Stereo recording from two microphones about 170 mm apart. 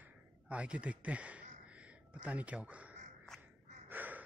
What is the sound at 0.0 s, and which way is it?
Speech, 5° right (ahead or behind).